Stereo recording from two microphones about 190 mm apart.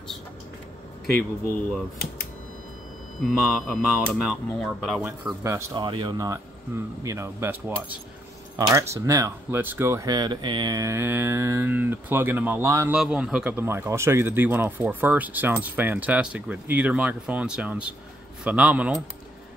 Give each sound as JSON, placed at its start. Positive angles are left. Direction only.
{"t": 3.2, "sound": "speech", "side_deg": 0}
{"t": 5.4, "sound": "speech", "side_deg": -20}